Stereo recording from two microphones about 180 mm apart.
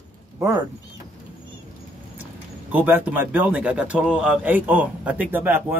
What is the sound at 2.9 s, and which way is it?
A man's voice, 10° right (ahead or behind).